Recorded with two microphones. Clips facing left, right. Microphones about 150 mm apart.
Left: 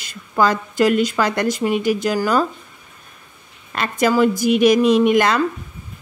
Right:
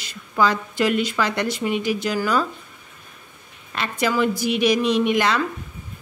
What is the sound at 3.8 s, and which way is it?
Speech, 45° left (ahead or behind).